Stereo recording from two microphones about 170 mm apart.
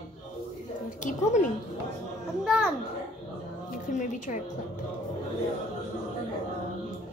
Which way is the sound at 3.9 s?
50° left (ahead or behind).